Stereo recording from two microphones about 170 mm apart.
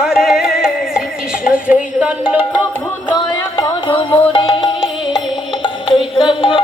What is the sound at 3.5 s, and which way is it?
Music, 30° left (ahead or behind).